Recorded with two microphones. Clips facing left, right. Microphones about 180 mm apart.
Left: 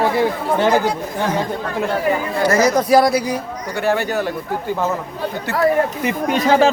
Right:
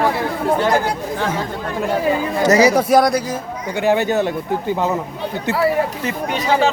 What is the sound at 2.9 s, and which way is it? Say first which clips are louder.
Speech: left 1 dB; centre (ahead or behind).